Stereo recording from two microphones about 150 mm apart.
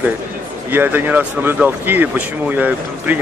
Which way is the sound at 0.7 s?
15° right (ahead or behind).